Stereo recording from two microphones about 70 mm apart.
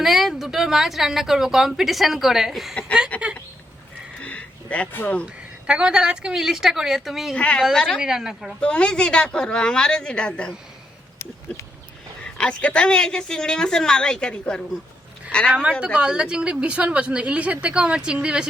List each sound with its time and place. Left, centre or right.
0.0 s speech: centre
3.1 s speech: left
4.2 s a sound: centre
5.2 s a woman's voice: centre
7.3 s a woman's voice: centre
7.9 s speech: centre
8.6 s a woman's voice: centre
12.2 s a woman's voice: centre
15.8 s a woman's voice: centre